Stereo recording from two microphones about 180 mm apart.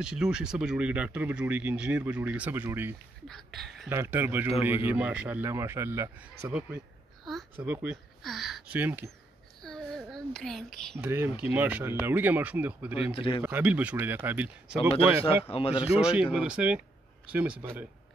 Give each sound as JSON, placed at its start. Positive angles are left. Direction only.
{"t": 0.0, "sound": "speech", "side_deg": -5}
{"t": 3.3, "sound": "speech", "side_deg": 0}
{"t": 3.9, "sound": "speech", "side_deg": -10}
{"t": 8.2, "sound": "speech", "side_deg": 0}
{"t": 9.6, "sound": "a sound", "side_deg": 5}
{"t": 11.1, "sound": "speech", "side_deg": -10}
{"t": 13.0, "sound": "speech", "side_deg": 30}
{"t": 13.4, "sound": "speech", "side_deg": -10}
{"t": 15.5, "sound": "speech", "side_deg": 30}
{"t": 16.0, "sound": "speech", "side_deg": -5}